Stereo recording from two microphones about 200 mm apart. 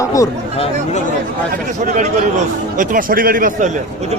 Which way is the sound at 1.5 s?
40° right (ahead or behind).